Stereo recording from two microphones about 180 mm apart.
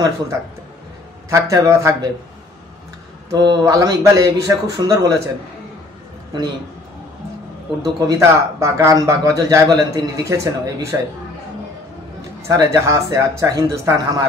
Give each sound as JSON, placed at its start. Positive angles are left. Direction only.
{"t": 1.3, "sound": "speech", "side_deg": -15}
{"t": 3.3, "sound": "speech", "side_deg": -20}
{"t": 7.8, "sound": "speech", "side_deg": -20}
{"t": 12.4, "sound": "speech", "side_deg": -20}